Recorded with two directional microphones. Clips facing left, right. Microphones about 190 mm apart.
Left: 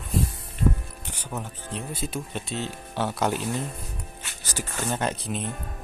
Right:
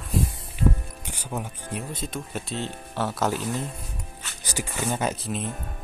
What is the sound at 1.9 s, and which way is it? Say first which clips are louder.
Speech: left 1 dB; 10° left (ahead or behind).